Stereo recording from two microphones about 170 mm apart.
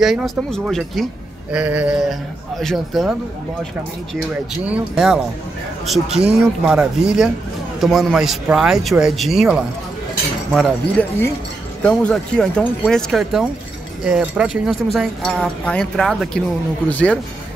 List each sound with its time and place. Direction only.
0.0 s speech: centre (ahead or behind)
1.5 s mantra: 10° right (ahead or behind)
2.6 s speech: centre (ahead or behind)
4.6 s speech: 5° right (ahead or behind)
11.0 s speech: 15° left (ahead or behind)